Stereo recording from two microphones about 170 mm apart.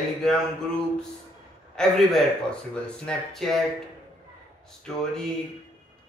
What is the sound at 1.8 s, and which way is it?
Speech, centre (ahead or behind).